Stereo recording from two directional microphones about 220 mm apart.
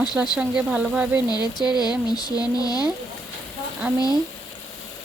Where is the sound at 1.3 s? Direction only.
20° left (ahead or behind).